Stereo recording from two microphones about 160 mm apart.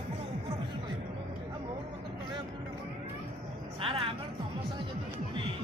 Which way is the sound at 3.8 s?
35° right (ahead or behind).